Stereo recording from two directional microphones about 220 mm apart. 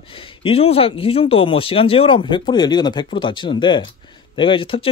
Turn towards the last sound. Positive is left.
turn(degrees=25)  # may be behind; listen again after turning